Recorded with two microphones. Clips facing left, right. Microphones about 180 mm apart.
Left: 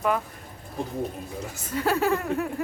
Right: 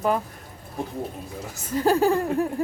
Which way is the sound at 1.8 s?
35° right (ahead or behind).